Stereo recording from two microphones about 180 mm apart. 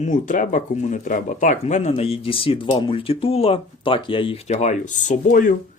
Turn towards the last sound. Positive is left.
turn(degrees=50)  # may be behind; listen again after turning